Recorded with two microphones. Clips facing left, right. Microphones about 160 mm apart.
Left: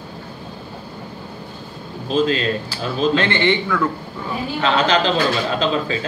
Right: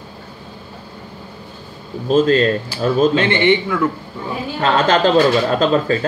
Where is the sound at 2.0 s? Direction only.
45° right (ahead or behind).